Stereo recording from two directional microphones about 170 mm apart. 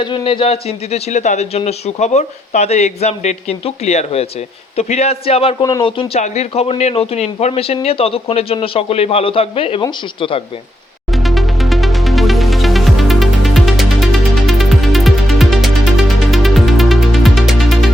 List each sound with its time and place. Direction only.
0.0 s a man's voice: 30° left (ahead or behind)
11.1 s music: centre (ahead or behind)